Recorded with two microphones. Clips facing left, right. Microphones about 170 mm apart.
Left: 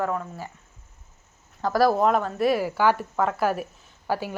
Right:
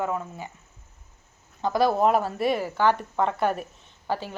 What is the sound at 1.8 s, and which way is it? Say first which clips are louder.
Speech: even; 5° right (ahead or behind).